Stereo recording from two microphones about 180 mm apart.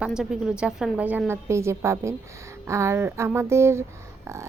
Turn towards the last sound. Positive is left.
turn(degrees=-15)  # may be behind; listen again after turning